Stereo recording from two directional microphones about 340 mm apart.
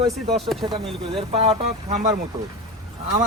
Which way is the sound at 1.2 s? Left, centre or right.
Centre.